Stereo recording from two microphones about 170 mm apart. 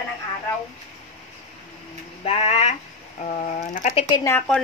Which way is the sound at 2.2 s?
40° left (ahead or behind).